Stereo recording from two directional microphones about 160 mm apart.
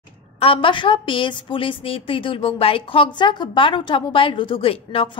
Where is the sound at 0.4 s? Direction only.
35° left (ahead or behind).